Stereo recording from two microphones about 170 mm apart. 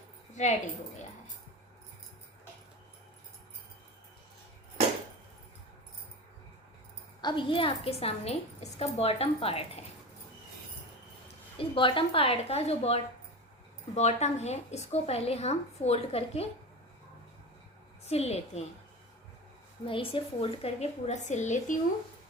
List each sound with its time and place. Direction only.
0.4 s a woman's voice: 45° left (ahead or behind)
7.2 s a woman's voice: 25° left (ahead or behind)
11.5 s a woman's voice: 30° left (ahead or behind)
18.0 s a woman's voice: 40° left (ahead or behind)
19.8 s a woman's voice: 30° left (ahead or behind)